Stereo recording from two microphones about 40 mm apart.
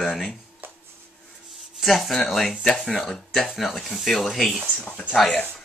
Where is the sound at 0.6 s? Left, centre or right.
Right.